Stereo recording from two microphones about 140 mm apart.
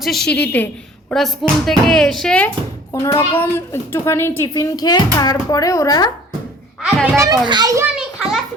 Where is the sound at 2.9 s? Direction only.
20° left (ahead or behind).